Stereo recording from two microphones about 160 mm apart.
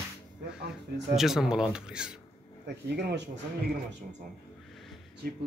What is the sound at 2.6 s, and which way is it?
Speech, 90° right.